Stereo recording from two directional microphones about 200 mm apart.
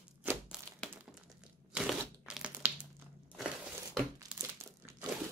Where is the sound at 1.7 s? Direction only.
5° right (ahead or behind).